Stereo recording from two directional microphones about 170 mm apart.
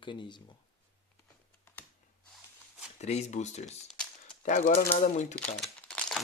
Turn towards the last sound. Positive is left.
turn(degrees=5)  # may be behind; listen again after turning